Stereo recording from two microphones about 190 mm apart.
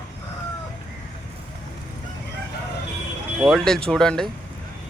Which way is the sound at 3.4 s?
Centre (ahead or behind).